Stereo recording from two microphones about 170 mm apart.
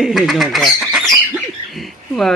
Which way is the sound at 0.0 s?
Centre (ahead or behind).